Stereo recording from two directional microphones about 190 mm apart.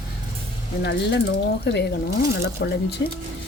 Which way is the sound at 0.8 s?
60° left (ahead or behind).